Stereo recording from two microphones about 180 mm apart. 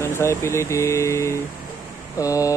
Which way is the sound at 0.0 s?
15° left (ahead or behind).